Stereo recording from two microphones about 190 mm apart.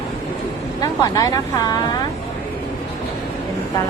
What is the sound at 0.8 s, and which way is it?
Speech, 20° left (ahead or behind).